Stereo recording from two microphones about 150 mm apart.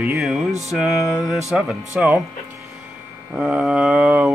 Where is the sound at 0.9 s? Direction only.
20° left (ahead or behind).